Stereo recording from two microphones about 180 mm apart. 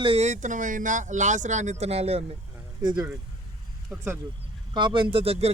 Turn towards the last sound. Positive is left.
turn(degrees=-35)  # may be behind; listen again after turning